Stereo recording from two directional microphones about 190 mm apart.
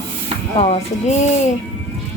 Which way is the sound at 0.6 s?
35° left (ahead or behind).